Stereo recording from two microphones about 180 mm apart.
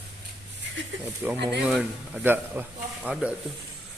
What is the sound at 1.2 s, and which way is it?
A man's voice, 10° right (ahead or behind).